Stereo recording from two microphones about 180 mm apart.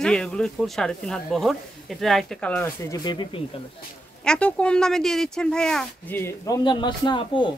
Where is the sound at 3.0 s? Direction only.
25° left (ahead or behind).